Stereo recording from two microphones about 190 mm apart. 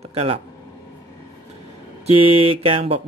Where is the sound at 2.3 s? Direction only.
30° right (ahead or behind).